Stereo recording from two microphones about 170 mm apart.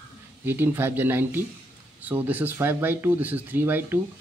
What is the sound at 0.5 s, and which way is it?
Speech, 10° right (ahead or behind).